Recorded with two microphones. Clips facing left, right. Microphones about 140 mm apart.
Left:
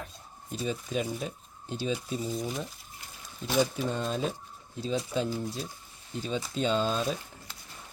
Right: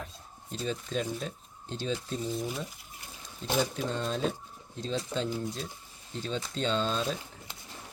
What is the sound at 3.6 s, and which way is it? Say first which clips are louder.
Speech: left 4 dB; 10° left (ahead or behind).